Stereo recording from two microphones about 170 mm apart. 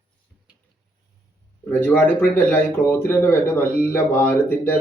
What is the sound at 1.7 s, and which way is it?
A man's voice, 10° left (ahead or behind).